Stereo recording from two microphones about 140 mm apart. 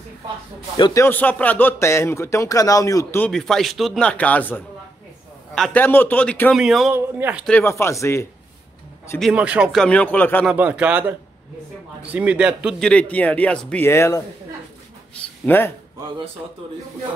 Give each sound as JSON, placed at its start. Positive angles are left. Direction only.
{"t": 0.9, "sound": "a man's voice", "side_deg": 15}
{"t": 3.2, "sound": "speech", "side_deg": 5}
{"t": 6.5, "sound": "speech", "side_deg": 0}
{"t": 6.9, "sound": "a man's voice", "side_deg": -15}
{"t": 7.6, "sound": "a man's voice", "side_deg": 20}
{"t": 9.2, "sound": "a man's voice", "side_deg": -10}
{"t": 9.8, "sound": "speech", "side_deg": 10}
{"t": 10.5, "sound": "a man's voice", "side_deg": -10}
{"t": 12.8, "sound": "a man's voice", "side_deg": 10}
{"t": 15.4, "sound": "speech", "side_deg": 15}